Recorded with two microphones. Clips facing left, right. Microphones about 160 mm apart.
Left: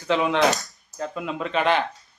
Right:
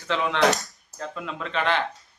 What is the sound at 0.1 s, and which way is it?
A man's voice, 15° left (ahead or behind).